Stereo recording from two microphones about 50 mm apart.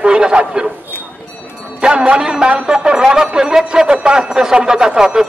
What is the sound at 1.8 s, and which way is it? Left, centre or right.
A man's voice, centre.